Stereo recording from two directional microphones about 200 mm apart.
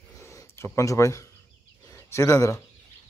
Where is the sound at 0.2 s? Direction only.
15° left (ahead or behind).